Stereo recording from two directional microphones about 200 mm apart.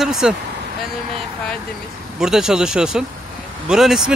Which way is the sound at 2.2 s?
5° right (ahead or behind).